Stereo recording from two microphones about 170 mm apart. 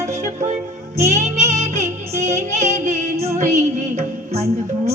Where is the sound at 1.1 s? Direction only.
40° right (ahead or behind).